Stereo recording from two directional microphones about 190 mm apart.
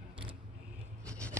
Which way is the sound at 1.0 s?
5° left (ahead or behind).